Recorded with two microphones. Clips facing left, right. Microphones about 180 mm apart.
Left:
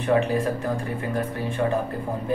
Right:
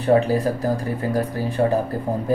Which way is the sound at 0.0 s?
35° right (ahead or behind).